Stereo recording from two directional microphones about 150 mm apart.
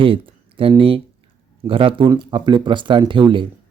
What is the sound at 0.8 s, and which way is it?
Speech, 35° right (ahead or behind).